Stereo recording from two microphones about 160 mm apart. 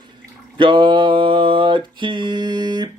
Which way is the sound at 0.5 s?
30° right (ahead or behind).